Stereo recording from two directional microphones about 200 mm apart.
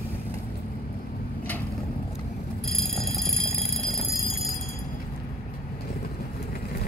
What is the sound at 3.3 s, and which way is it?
Alarm clock, 70° right (ahead or behind).